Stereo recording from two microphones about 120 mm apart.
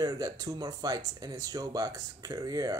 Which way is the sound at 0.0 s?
30° right (ahead or behind).